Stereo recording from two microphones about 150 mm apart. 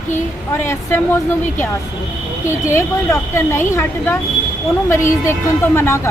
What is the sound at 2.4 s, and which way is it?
A woman's voice, 15° left (ahead or behind).